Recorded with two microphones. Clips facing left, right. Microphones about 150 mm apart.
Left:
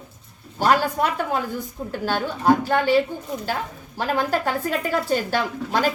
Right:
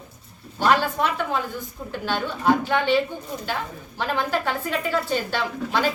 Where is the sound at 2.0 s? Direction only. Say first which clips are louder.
Left 2 dB; 40° left (ahead or behind).